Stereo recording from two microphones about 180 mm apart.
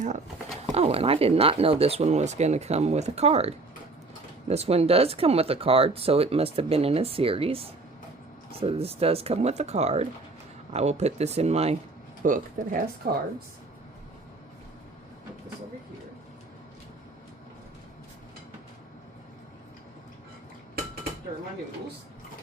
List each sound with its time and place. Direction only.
0.7 s speech: 35° right (ahead or behind)
12.2 s speech: 50° right (ahead or behind)